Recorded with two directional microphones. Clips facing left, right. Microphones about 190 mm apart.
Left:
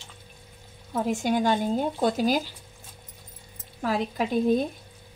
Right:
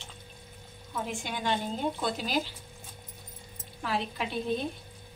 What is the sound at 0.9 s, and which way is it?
Speech, 40° left (ahead or behind).